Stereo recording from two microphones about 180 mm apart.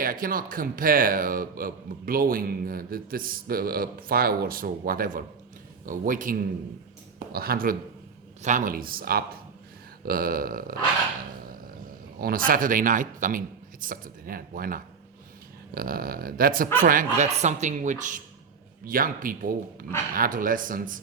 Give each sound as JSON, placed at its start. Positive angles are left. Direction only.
{"t": 0.0, "sound": "a man's voice", "side_deg": -50}
{"t": 8.4, "sound": "a man's voice", "side_deg": -45}
{"t": 12.2, "sound": "a man's voice", "side_deg": -50}